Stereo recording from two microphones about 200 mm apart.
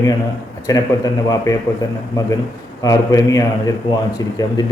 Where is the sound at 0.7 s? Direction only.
20° left (ahead or behind).